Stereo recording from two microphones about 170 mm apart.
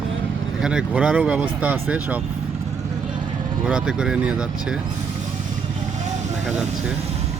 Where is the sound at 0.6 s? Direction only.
5° right (ahead or behind).